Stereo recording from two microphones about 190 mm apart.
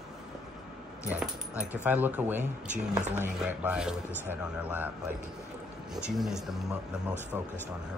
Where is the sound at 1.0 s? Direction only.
10° right (ahead or behind).